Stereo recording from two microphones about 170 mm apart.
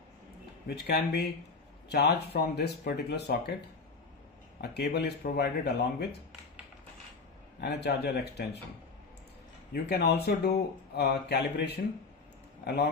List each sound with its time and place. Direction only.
0.8 s speech: 70° left (ahead or behind)
4.6 s speech: 75° left (ahead or behind)
7.6 s speech: 70° left (ahead or behind)
9.7 s speech: 70° left (ahead or behind)